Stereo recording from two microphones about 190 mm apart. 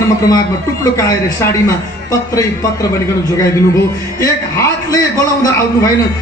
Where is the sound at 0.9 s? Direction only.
15° left (ahead or behind).